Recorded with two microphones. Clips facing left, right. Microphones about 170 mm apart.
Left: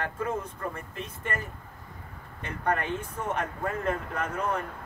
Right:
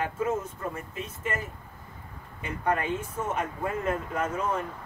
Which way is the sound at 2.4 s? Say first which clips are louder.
Right 1 dB; 5° right (ahead or behind).